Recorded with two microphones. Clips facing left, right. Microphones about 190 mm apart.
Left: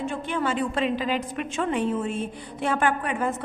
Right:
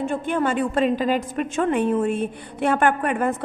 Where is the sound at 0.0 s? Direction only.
50° right (ahead or behind).